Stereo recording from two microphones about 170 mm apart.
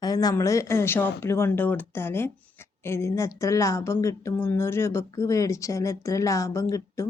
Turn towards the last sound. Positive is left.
turn(degrees=20)  # may be behind; listen again after turning